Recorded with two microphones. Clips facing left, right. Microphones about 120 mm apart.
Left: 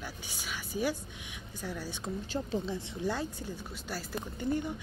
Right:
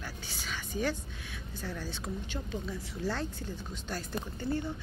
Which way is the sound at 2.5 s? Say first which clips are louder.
Left 4 dB; 25° left (ahead or behind).